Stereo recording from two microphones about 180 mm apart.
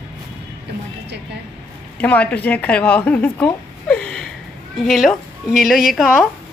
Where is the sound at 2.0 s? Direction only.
10° left (ahead or behind).